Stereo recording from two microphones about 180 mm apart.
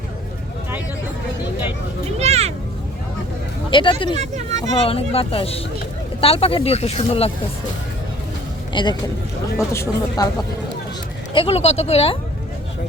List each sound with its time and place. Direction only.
2.1 s a sound: 35° right (ahead or behind)
3.7 s speech: 30° left (ahead or behind)
4.2 s a sound: 40° right (ahead or behind)
4.8 s speech: 35° left (ahead or behind)
8.7 s speech: 25° left (ahead or behind)
9.7 s speech: 15° left (ahead or behind)
11.3 s speech: 35° left (ahead or behind)